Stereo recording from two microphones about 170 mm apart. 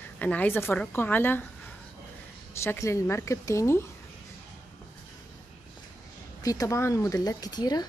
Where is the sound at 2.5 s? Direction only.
15° left (ahead or behind).